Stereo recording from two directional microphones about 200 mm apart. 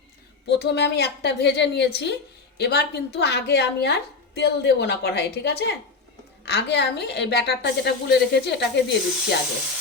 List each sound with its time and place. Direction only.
0.4 s a woman's voice: 55° left (ahead or behind)